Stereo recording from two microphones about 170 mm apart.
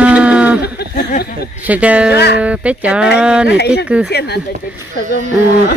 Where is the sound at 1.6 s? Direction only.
10° right (ahead or behind).